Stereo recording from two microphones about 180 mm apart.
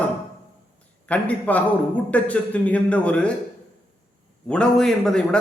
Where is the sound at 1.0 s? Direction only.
10° left (ahead or behind).